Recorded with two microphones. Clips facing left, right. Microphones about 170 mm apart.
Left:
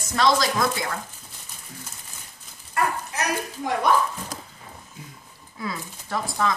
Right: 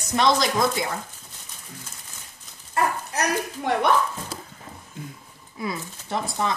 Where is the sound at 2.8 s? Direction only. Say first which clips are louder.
Right 1 dB; 25° right (ahead or behind).